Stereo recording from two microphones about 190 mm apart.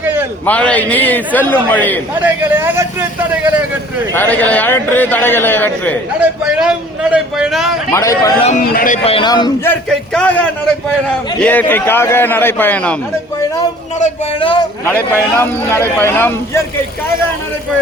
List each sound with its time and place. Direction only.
0.0 s a sound: 10° right (ahead or behind)
0.4 s a man's voice: 5° left (ahead or behind)
2.1 s a man's voice: 10° right (ahead or behind)
4.1 s a man's voice: 10° left (ahead or behind)
6.1 s a man's voice: 5° right (ahead or behind)
7.9 s a man's voice: 20° left (ahead or behind)
8.4 s speech: 45° left (ahead or behind)
9.0 s speech: 25° left (ahead or behind)
9.6 s a man's voice: 5° left (ahead or behind)
14.0 s speech: 30° left (ahead or behind)
14.8 s a man's voice: 10° left (ahead or behind)